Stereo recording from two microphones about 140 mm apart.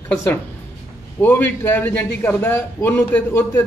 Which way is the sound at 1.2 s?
15° left (ahead or behind).